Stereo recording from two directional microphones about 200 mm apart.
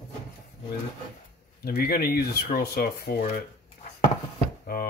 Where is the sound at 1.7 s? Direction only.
50° left (ahead or behind).